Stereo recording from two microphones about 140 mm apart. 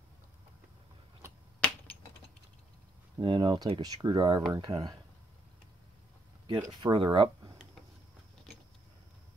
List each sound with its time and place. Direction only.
3.2 s speech: 35° right (ahead or behind)
6.4 s speech: 35° right (ahead or behind)